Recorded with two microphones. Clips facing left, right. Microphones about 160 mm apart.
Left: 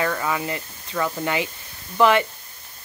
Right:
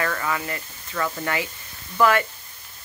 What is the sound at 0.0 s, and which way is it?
Speech, 15° left (ahead or behind).